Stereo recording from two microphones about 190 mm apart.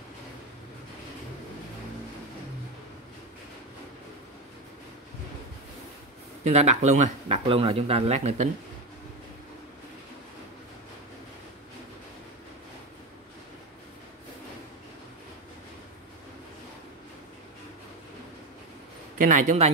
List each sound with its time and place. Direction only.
6.4 s speech: 35° right (ahead or behind)
19.1 s speech: 40° right (ahead or behind)